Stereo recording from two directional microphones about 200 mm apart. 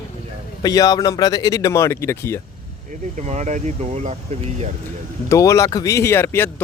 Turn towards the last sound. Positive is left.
turn(degrees=10)  # may be behind; listen again after turning